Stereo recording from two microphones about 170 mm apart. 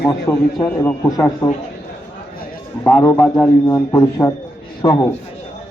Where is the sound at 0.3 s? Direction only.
15° left (ahead or behind).